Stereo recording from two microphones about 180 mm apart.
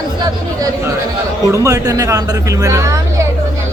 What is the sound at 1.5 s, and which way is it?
Speech, 15° right (ahead or behind).